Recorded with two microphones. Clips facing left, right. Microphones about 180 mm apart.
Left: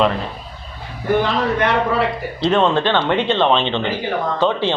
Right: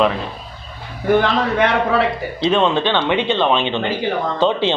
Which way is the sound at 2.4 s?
10° right (ahead or behind).